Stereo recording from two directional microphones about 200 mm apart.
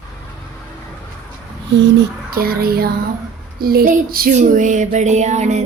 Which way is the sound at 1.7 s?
55° right (ahead or behind).